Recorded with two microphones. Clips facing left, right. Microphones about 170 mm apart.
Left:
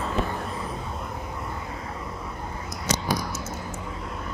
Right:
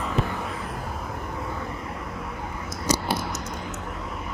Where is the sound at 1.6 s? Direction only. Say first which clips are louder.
Right 2 dB; 25° left (ahead or behind).